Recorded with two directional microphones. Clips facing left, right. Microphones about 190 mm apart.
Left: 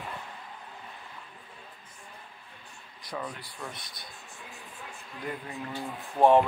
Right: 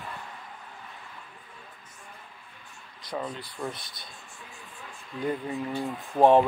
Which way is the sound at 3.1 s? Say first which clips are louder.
Right 3 dB; 30° right (ahead or behind).